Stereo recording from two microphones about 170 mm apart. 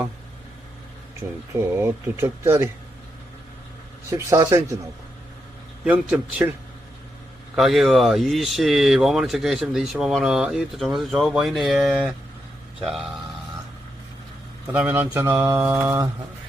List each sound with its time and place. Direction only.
1.5 s mantra: 15° right (ahead or behind)
4.1 s mantra: 15° right (ahead or behind)
5.8 s mantra: 5° right (ahead or behind)
7.5 s speech: centre (ahead or behind)
14.7 s mantra: 10° right (ahead or behind)